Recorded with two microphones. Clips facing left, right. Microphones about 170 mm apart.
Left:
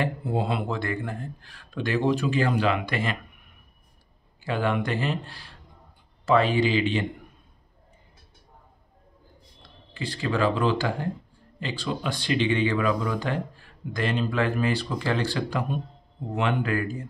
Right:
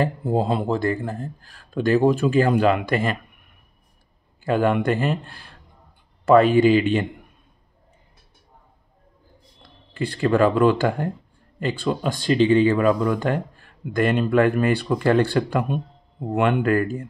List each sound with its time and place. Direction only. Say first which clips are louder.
0.0 s speech: right 5 dB; 40° right (ahead or behind)
4.5 s speech: right 6 dB; 50° right (ahead or behind)
9.6 s speech: right 8 dB; 55° right (ahead or behind)